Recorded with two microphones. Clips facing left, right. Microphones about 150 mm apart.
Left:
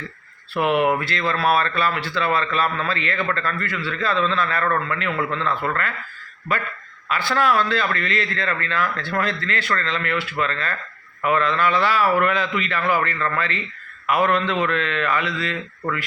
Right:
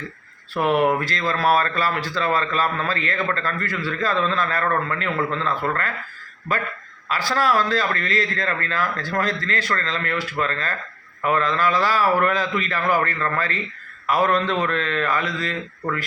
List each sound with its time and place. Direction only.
0.9 s a man's voice: 40° right (ahead or behind)
7.1 s a man's voice: 40° right (ahead or behind)